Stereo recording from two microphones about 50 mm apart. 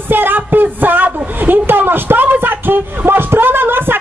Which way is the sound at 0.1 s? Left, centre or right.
Right.